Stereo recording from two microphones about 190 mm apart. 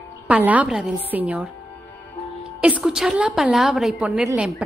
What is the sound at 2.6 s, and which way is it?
A woman's voice, 5° right (ahead or behind).